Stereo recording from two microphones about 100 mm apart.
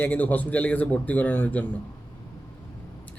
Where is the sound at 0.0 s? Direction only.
15° left (ahead or behind).